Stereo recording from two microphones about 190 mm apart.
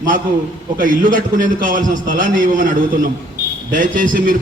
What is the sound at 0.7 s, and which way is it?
A man's voice, 45° right (ahead or behind).